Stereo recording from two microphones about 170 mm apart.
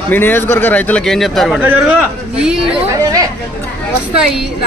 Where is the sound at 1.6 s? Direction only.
10° right (ahead or behind).